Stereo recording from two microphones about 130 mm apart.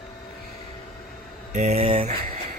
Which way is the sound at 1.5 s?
60° right (ahead or behind).